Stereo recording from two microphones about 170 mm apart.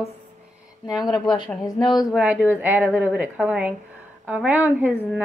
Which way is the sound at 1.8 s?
Centre (ahead or behind).